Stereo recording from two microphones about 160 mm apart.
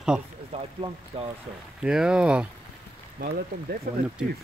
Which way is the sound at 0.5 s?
40° right (ahead or behind).